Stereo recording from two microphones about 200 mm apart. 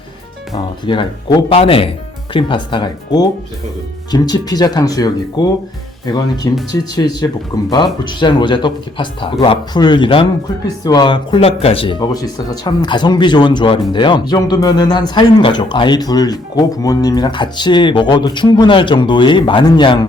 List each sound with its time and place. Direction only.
0.5 s speech: 20° left (ahead or behind)